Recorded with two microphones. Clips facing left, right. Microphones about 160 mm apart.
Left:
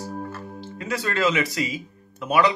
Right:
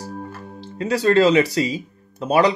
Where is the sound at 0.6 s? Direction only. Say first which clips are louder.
Right 8 dB; 35° right (ahead or behind).